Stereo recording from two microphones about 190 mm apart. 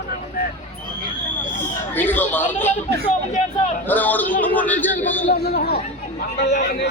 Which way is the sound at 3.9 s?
10° left (ahead or behind).